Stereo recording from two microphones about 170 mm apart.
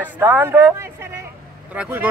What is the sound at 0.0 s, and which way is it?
Speech, 10° right (ahead or behind).